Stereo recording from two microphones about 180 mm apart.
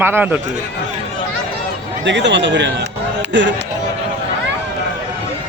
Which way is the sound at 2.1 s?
80° right.